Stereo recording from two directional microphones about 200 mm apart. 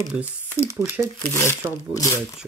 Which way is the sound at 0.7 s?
10° right (ahead or behind).